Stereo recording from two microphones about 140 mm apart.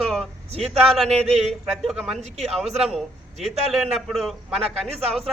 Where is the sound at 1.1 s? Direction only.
50° right (ahead or behind).